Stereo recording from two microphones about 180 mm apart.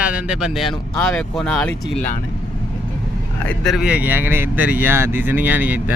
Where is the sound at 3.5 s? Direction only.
Centre (ahead or behind).